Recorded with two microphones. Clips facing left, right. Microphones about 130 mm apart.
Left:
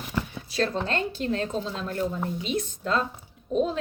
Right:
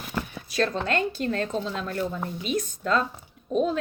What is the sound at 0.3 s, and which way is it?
A woman's voice, 30° left (ahead or behind).